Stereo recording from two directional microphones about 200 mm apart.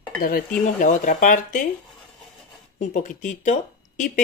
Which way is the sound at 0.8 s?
40° left (ahead or behind).